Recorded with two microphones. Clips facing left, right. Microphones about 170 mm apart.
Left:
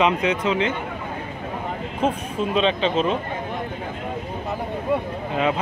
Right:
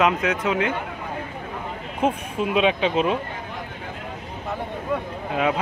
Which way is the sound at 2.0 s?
10° right (ahead or behind).